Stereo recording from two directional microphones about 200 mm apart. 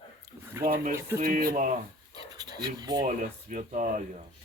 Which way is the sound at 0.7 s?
45° right (ahead or behind).